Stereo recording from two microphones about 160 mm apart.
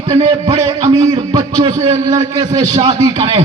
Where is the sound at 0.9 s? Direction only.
30° right (ahead or behind).